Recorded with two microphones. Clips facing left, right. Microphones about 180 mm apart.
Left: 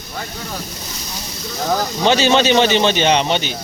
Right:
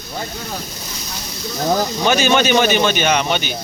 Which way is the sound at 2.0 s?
25° left (ahead or behind).